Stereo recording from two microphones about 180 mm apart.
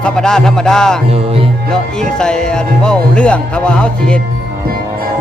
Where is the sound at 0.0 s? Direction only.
5° left (ahead or behind).